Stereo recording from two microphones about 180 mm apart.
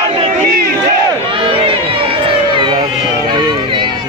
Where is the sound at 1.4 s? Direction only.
30° right (ahead or behind).